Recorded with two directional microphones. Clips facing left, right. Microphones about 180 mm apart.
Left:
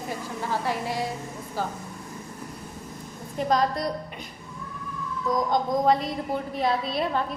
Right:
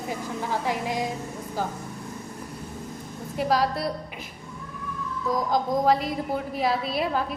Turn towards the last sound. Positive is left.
turn(degrees=-5)  # may be behind; listen again after turning